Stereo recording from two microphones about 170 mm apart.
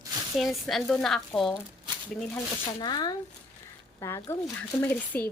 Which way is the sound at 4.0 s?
15° left (ahead or behind).